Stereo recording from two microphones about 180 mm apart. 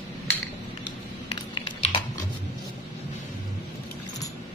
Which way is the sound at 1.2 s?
30° left (ahead or behind).